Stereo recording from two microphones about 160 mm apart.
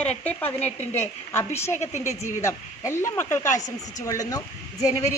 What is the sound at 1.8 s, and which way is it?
Speech, 45° left (ahead or behind).